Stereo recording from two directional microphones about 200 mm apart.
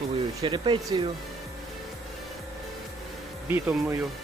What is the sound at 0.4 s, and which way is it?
Speech, 25° right (ahead or behind).